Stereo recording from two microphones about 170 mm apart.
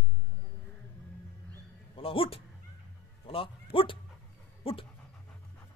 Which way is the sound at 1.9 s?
30° left (ahead or behind).